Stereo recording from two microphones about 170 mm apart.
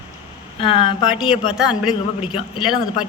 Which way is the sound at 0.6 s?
30° left (ahead or behind).